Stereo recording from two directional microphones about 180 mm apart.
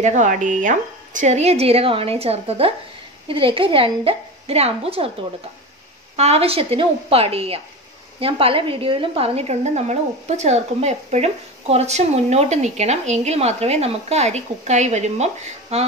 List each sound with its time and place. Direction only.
0.0 s a woman's voice: 45° right (ahead or behind)
6.1 s a woman's voice: 35° right (ahead or behind)